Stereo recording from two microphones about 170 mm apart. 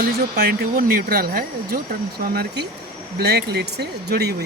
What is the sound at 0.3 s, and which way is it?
Speech, 60° right (ahead or behind).